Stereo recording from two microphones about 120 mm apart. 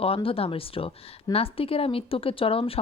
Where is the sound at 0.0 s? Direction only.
50° left (ahead or behind).